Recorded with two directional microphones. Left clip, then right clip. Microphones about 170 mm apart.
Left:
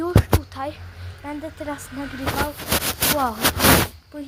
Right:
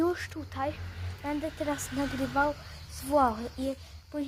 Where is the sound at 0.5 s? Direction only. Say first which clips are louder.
Left 4 dB; 25° left (ahead or behind).